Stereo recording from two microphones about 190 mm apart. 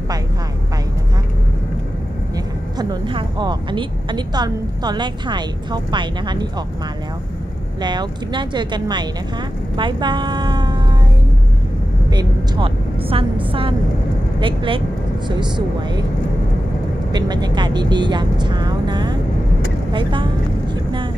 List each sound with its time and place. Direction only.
2.3 s speech: 20° right (ahead or behind)
7.8 s a woman's voice: 20° right (ahead or behind)
12.1 s a woman's voice: 25° right (ahead or behind)
17.1 s speech: 20° right (ahead or behind)